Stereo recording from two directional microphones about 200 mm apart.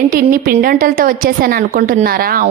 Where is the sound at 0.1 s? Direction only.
45° right (ahead or behind).